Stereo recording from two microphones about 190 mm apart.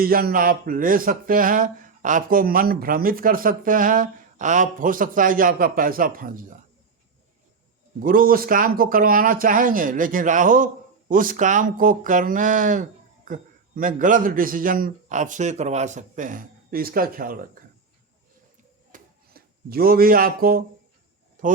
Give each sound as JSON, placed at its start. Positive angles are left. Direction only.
{"t": 0.0, "sound": "speech", "side_deg": -50}
{"t": 7.9, "sound": "speech", "side_deg": -45}
{"t": 18.9, "sound": "a sound", "side_deg": -50}